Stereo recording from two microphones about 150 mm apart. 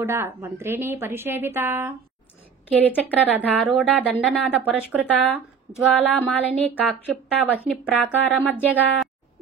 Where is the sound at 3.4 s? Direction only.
10° right (ahead or behind).